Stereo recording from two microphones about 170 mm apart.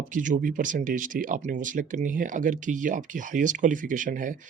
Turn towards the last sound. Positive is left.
turn(degrees=-50)  # may be behind; listen again after turning